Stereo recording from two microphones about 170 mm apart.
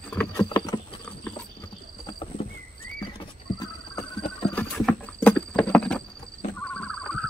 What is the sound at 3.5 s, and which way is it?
Horse, 30° left (ahead or behind).